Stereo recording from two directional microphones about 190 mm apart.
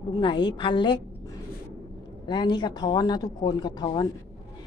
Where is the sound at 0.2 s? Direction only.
25° left (ahead or behind).